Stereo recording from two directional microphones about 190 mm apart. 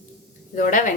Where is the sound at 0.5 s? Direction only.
40° left (ahead or behind).